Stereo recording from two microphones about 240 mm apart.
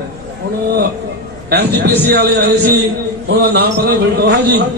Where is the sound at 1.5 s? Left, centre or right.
Right.